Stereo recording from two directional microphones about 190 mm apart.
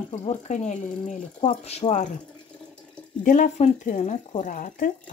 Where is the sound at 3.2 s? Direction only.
40° left (ahead or behind).